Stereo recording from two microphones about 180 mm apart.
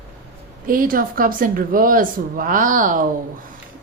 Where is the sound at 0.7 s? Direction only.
50° right (ahead or behind).